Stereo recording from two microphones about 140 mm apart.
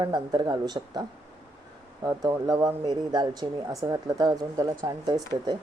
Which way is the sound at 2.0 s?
25° right (ahead or behind).